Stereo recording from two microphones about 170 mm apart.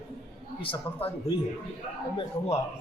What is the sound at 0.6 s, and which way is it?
Speech, 30° left (ahead or behind).